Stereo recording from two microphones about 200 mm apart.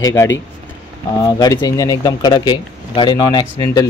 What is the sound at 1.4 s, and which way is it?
Speech, 20° left (ahead or behind).